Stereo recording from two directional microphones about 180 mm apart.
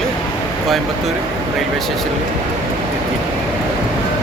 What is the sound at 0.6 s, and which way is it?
Speech, centre (ahead or behind).